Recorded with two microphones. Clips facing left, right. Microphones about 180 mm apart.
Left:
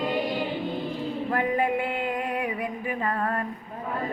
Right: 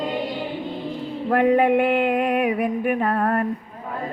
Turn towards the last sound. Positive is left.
turn(degrees=-60)  # may be behind; listen again after turning